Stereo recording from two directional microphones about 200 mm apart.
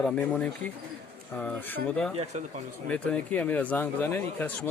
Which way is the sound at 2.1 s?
30° right (ahead or behind).